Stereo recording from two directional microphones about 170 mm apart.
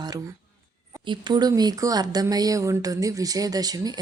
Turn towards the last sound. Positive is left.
turn(degrees=-20)  # may be behind; listen again after turning